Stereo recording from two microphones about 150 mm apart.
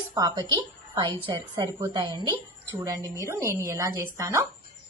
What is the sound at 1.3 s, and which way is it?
Speech, 25° right (ahead or behind).